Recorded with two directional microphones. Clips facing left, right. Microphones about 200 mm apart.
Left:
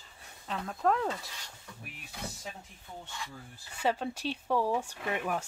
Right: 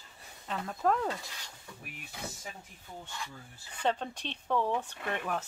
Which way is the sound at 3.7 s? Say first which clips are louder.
Left 1 dB; 5° left (ahead or behind).